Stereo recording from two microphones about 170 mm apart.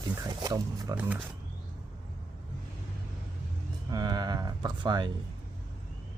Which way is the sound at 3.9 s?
25° right (ahead or behind).